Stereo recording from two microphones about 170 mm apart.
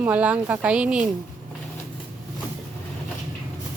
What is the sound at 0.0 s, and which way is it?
A woman's voice, 10° right (ahead or behind).